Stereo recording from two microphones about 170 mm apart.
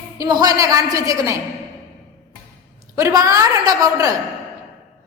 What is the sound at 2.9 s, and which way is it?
A woman's voice, 20° right (ahead or behind).